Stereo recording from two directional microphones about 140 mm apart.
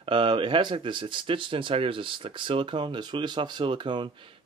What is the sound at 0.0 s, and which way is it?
Speech, 35° right (ahead or behind).